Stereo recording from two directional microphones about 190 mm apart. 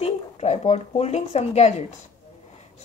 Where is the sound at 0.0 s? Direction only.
35° left (ahead or behind).